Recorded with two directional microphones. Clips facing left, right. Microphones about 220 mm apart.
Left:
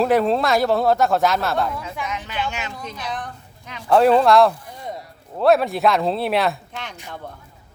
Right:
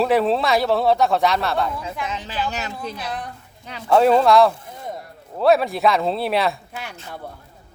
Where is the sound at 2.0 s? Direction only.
30° right (ahead or behind).